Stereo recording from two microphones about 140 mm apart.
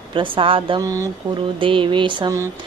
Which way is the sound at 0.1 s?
40° right (ahead or behind).